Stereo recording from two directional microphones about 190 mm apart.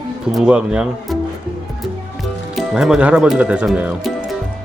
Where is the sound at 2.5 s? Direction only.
Centre (ahead or behind).